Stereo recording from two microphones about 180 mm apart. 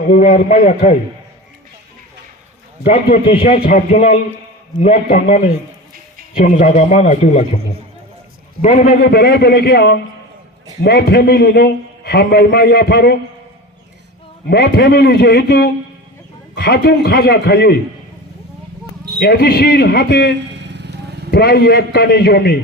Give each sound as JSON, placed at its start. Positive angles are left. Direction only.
{"t": 0.1, "sound": "a man's voice", "side_deg": 45}
{"t": 3.2, "sound": "a man's voice", "side_deg": 30}
{"t": 3.6, "sound": "a man's voice", "side_deg": 45}
{"t": 6.3, "sound": "a man's voice", "side_deg": 45}
{"t": 8.6, "sound": "a man's voice", "side_deg": 45}
{"t": 9.0, "sound": "a man's voice", "side_deg": 60}
{"t": 14.4, "sound": "a man's voice", "side_deg": 65}
{"t": 19.2, "sound": "a man's voice", "side_deg": 60}
{"t": 20.5, "sound": "vehicle", "side_deg": -75}
{"t": 21.2, "sound": "a man's voice", "side_deg": 60}